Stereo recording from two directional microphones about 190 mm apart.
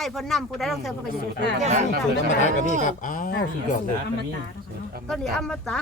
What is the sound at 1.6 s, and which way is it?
Speech, 40° right (ahead or behind).